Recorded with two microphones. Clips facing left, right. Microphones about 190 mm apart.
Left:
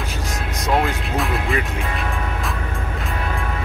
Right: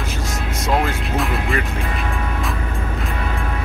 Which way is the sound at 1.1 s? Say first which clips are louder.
Right 1 dB; centre (ahead or behind).